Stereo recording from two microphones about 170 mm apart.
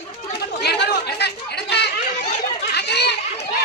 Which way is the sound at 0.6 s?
80° left.